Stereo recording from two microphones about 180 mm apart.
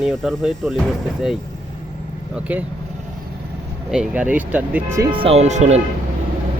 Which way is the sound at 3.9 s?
5° right (ahead or behind).